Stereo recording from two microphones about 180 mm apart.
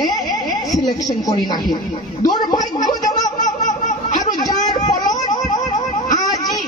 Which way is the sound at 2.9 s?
20° left (ahead or behind).